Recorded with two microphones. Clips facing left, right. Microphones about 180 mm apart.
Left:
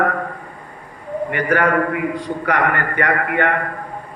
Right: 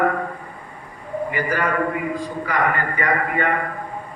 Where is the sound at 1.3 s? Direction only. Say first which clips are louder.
Left 6 dB; 65° left (ahead or behind).